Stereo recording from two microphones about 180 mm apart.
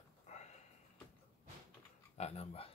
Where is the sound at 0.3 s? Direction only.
40° left (ahead or behind).